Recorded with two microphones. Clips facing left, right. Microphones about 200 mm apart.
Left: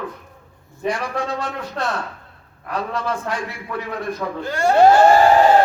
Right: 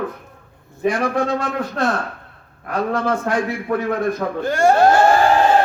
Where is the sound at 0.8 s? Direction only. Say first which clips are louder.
Right 5 dB; 50° right (ahead or behind).